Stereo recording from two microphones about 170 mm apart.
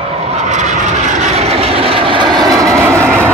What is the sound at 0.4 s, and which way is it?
Vehicle, 45° right (ahead or behind).